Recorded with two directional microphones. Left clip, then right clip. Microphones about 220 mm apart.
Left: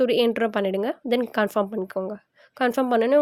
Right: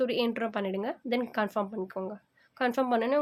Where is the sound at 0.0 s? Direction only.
35° left (ahead or behind).